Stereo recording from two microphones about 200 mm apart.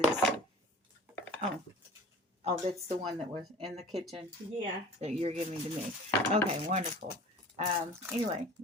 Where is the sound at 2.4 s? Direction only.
30° right (ahead or behind).